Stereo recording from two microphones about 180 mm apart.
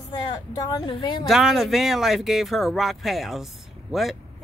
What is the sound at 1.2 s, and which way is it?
Speech, centre (ahead or behind).